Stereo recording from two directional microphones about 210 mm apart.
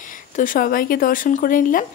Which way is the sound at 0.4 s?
40° left (ahead or behind).